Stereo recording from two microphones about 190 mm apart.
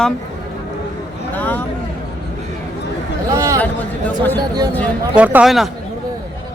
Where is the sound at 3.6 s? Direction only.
10° left (ahead or behind).